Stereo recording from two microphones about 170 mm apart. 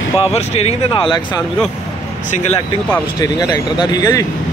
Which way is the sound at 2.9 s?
20° left (ahead or behind).